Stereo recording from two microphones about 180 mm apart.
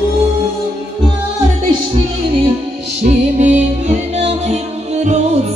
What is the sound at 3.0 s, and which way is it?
Music, 40° right (ahead or behind).